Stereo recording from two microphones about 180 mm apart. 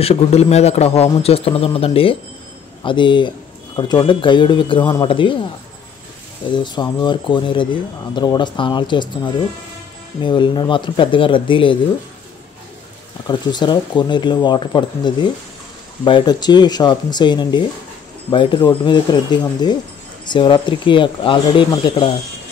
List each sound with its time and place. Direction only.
0.0 s a man's voice: 35° left (ahead or behind)
6.5 s speech: 25° left (ahead or behind)
13.3 s speech: 25° left (ahead or behind)